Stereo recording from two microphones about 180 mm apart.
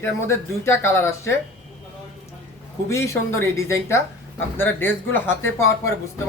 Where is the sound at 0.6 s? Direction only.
15° left (ahead or behind).